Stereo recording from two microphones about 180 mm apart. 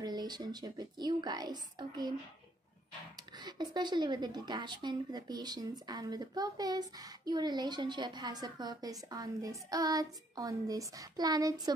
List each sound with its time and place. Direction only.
0.0 s a woman's voice: 25° right (ahead or behind)
3.3 s a woman's voice: 25° right (ahead or behind)